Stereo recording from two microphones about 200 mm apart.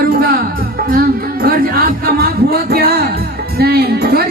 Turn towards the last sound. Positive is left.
turn(degrees=-50)  # may be behind; listen again after turning